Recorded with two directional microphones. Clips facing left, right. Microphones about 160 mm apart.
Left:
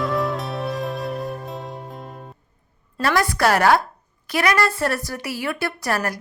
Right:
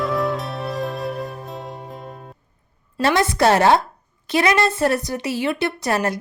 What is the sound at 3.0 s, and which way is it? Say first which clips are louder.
A woman's voice: right 2 dB; 20° right (ahead or behind).